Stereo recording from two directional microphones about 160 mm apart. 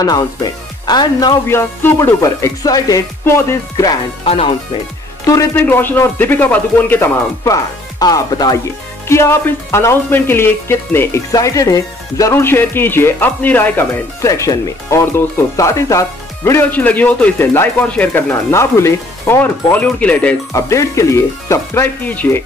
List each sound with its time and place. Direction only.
0.0 s speech: 25° left (ahead or behind)
4.2 s speech: 35° left (ahead or behind)
5.2 s speech: 20° left (ahead or behind)